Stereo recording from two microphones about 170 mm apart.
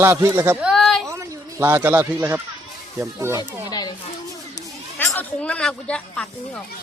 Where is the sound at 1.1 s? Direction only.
15° right (ahead or behind).